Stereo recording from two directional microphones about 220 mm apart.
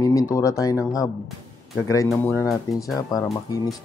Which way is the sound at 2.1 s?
10° left (ahead or behind).